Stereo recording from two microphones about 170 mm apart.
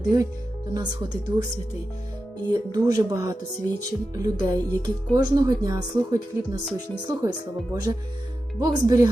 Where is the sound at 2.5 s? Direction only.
25° right (ahead or behind).